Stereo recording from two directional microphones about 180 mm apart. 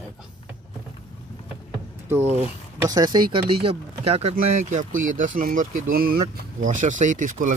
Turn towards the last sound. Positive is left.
turn(degrees=-45)  # may be behind; listen again after turning